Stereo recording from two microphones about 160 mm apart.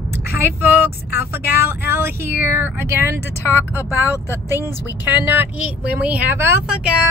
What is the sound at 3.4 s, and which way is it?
Speech, 15° left (ahead or behind).